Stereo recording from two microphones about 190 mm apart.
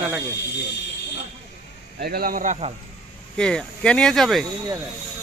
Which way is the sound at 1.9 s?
55° right (ahead or behind).